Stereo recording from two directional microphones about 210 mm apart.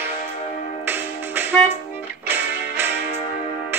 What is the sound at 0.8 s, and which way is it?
Music, 10° right (ahead or behind).